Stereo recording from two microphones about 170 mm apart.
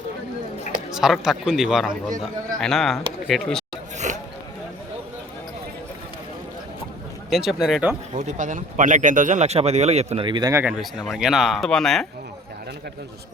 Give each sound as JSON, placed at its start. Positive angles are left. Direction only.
{"t": 0.9, "sound": "speech", "side_deg": -5}
{"t": 1.9, "sound": "speech", "side_deg": -50}
{"t": 2.6, "sound": "speech", "side_deg": 0}
{"t": 3.9, "sound": "a sound", "side_deg": -45}
{"t": 7.3, "sound": "speech", "side_deg": 0}
{"t": 8.1, "sound": "speech", "side_deg": -45}
{"t": 10.2, "sound": "speech", "side_deg": -25}
{"t": 10.5, "sound": "speech", "side_deg": -10}
{"t": 10.8, "sound": "speech", "side_deg": 0}